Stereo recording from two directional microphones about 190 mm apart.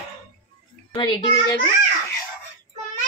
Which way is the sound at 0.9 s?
20° left (ahead or behind).